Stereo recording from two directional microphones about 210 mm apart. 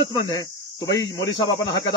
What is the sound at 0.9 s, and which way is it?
Speech, 15° left (ahead or behind).